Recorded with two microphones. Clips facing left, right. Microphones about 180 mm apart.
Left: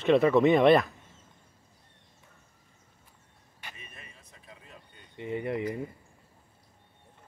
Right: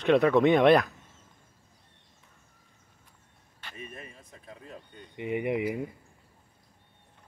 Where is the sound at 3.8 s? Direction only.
40° right (ahead or behind).